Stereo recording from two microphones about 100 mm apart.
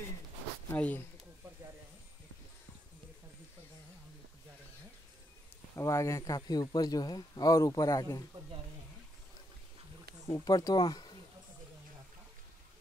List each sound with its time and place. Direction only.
0.7 s speech: 20° left (ahead or behind)
5.8 s a man's voice: 30° left (ahead or behind)
10.2 s speech: 35° left (ahead or behind)